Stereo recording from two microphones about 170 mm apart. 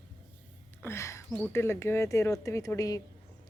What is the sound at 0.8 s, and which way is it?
A woman's voice, 15° left (ahead or behind).